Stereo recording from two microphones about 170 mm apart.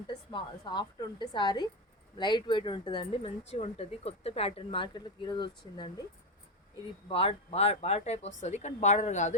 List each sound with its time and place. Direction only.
0.1 s speech: 25° left (ahead or behind)
7.1 s a woman's voice: 35° left (ahead or behind)